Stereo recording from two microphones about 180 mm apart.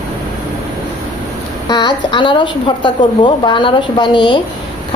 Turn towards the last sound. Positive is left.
turn(degrees=25)  # may be behind; listen again after turning